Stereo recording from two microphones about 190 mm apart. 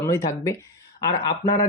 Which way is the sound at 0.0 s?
15° left (ahead or behind).